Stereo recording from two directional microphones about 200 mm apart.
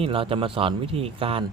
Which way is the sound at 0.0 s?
25° right (ahead or behind).